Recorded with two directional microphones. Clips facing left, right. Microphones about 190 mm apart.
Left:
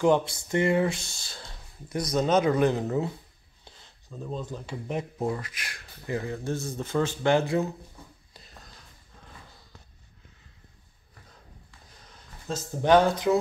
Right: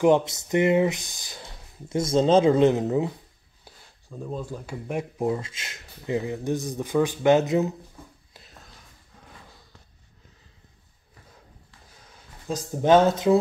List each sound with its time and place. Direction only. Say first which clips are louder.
0.0 s speech: right 3 dB; 20° right (ahead or behind)
12.4 s speech: right 3 dB; 20° right (ahead or behind)